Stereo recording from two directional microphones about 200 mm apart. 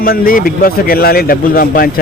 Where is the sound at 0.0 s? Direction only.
45° left (ahead or behind).